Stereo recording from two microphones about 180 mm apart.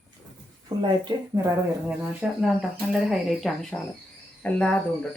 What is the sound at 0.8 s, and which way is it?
Speech, 25° right (ahead or behind).